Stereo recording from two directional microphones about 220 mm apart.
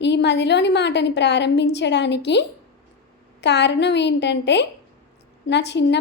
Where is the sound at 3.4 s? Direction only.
50° left (ahead or behind).